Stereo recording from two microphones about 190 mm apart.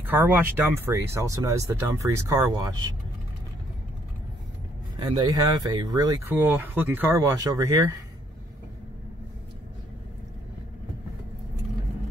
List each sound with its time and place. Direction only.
0.0 s speech: 10° right (ahead or behind)
4.9 s speech: 20° right (ahead or behind)